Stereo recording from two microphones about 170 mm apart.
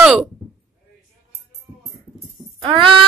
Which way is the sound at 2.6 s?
30° right (ahead or behind).